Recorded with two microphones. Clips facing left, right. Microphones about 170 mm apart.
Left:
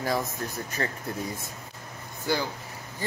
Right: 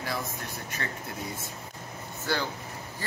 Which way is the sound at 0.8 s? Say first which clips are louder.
Left 6 dB; 35° left (ahead or behind).